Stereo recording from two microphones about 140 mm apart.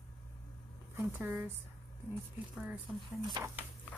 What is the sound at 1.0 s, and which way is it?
Speech, 15° right (ahead or behind).